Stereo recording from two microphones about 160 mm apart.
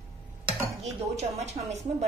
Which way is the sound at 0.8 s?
40° right (ahead or behind).